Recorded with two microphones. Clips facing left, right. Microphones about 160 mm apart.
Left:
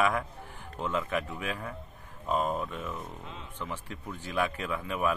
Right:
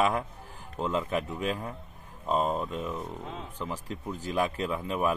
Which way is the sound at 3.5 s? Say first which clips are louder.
Right 1 dB; 35° right (ahead or behind).